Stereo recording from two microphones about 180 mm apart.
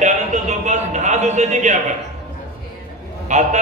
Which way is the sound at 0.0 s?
40° right (ahead or behind).